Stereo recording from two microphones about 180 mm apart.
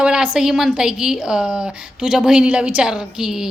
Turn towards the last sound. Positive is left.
turn(degrees=-5)  # may be behind; listen again after turning